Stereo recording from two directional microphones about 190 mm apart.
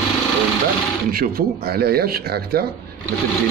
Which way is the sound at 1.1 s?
50° right (ahead or behind).